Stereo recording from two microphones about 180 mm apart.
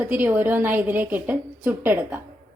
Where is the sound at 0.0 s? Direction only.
10° right (ahead or behind).